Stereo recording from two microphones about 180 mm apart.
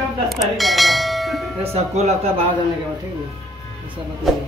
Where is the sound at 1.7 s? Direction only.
35° right (ahead or behind).